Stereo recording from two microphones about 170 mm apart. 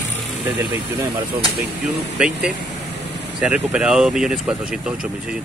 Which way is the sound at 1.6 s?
5° right (ahead or behind).